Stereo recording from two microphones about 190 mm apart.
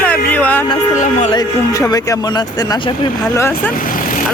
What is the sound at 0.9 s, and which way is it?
Speech, 40° left (ahead or behind).